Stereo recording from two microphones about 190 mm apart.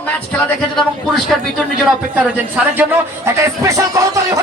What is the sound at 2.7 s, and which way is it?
Speech, 10° right (ahead or behind).